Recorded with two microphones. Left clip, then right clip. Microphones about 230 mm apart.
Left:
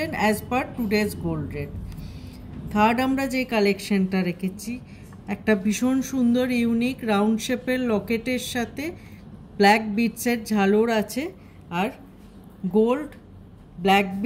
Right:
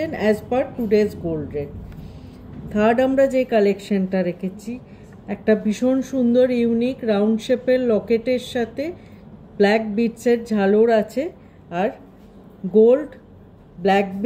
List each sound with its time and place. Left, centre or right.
0.0 s speech: left
2.7 s speech: left